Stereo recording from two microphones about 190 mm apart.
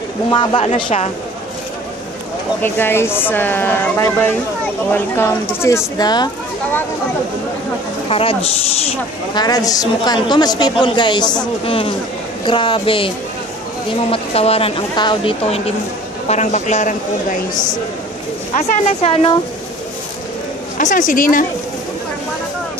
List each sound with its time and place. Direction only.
0.3 s a man's voice: 25° left (ahead or behind)
2.6 s speech: 10° left (ahead or behind)
8.1 s a man's voice: 30° left (ahead or behind)
9.4 s a man's voice: 20° left (ahead or behind)
14.1 s a woman's voice: 30° left (ahead or behind)
20.7 s speech: 45° left (ahead or behind)